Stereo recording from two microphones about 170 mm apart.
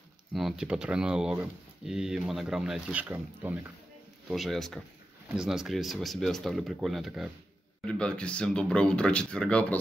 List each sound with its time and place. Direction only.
0.3 s speech: centre (ahead or behind)
4.3 s speech: centre (ahead or behind)